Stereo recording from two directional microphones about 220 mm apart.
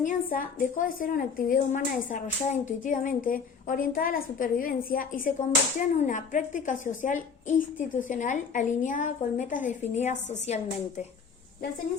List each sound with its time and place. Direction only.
0.0 s a woman's voice: 40° left (ahead or behind)